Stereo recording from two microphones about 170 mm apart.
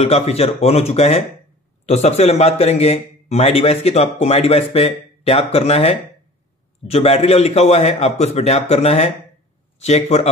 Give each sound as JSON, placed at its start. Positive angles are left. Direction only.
{"t": 0.0, "sound": "a man's voice", "side_deg": 35}